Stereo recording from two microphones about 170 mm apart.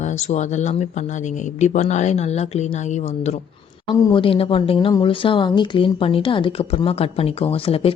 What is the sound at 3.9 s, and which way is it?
Speech, 30° left (ahead or behind).